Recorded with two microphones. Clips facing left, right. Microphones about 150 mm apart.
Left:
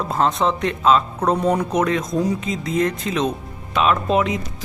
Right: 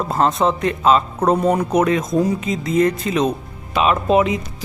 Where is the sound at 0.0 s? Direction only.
Centre (ahead or behind).